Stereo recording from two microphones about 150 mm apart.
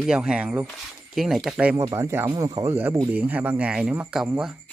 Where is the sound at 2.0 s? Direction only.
20° right (ahead or behind).